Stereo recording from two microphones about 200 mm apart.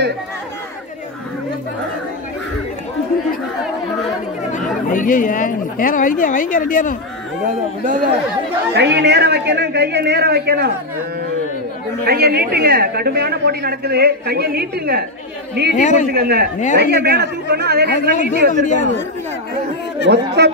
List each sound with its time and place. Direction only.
4.8 s speech: 40° left (ahead or behind)
7.4 s speech: 40° right (ahead or behind)
8.7 s a man's voice: 60° right (ahead or behind)
12.0 s a woman's voice: 50° right (ahead or behind)
15.7 s speech: 40° left (ahead or behind)
16.1 s a woman's voice: 50° right (ahead or behind)
18.5 s speech: 40° left (ahead or behind)
20.1 s a man's voice: 55° right (ahead or behind)